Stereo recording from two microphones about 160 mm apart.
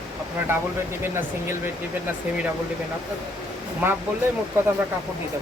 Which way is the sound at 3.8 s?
15° right (ahead or behind).